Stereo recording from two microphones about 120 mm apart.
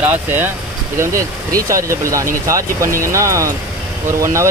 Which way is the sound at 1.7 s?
25° right (ahead or behind).